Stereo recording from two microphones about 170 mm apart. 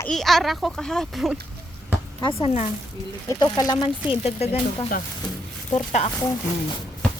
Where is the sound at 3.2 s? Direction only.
20° left (ahead or behind).